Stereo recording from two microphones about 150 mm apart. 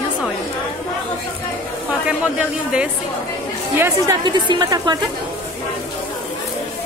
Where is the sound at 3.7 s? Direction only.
20° right (ahead or behind).